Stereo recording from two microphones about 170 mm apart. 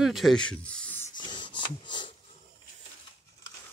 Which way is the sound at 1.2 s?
25° left (ahead or behind).